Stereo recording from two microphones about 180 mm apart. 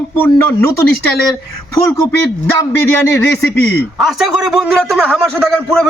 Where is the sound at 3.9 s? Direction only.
Centre (ahead or behind).